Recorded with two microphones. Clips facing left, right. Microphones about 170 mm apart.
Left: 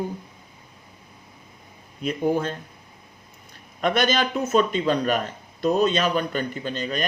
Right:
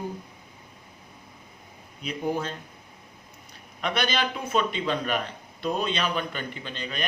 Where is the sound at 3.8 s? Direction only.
45° left (ahead or behind).